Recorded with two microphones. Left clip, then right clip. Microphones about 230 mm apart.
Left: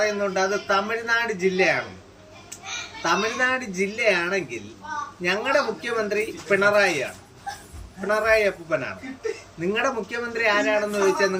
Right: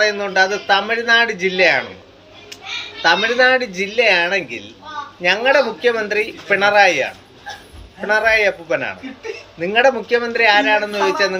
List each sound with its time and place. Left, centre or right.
0.0 s speech: centre
3.0 s speech: centre